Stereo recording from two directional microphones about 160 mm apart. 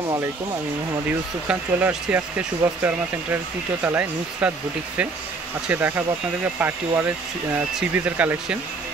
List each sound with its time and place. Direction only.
1.5 s speech: 10° right (ahead or behind)
5.7 s speech: 10° right (ahead or behind)